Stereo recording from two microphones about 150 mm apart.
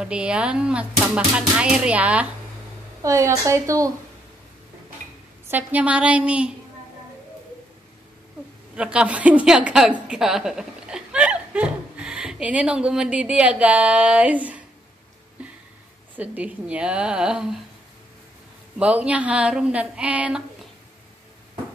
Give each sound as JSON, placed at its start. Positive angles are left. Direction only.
{"t": 0.0, "sound": "speech", "side_deg": -5}
{"t": 3.0, "sound": "speech", "side_deg": -20}
{"t": 5.5, "sound": "speech", "side_deg": -10}
{"t": 8.7, "sound": "a woman's voice", "side_deg": -5}
{"t": 16.2, "sound": "speech", "side_deg": -10}
{"t": 18.8, "sound": "speech", "side_deg": -10}